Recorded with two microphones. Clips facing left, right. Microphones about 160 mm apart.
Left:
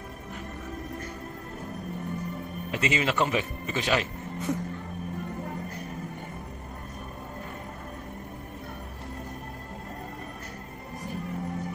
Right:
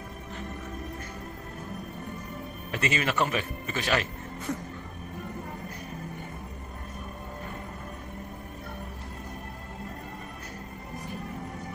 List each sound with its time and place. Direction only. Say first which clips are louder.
2.7 s speech: left 1 dB; 20° left (ahead or behind)